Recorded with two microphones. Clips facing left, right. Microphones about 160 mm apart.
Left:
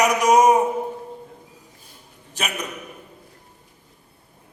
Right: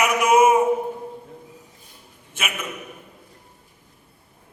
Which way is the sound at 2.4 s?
35° left (ahead or behind).